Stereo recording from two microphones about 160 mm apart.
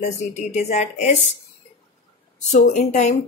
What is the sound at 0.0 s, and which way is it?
Speech, 45° left (ahead or behind).